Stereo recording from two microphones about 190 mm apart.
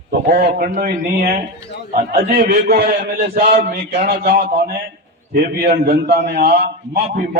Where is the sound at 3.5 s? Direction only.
40° right (ahead or behind).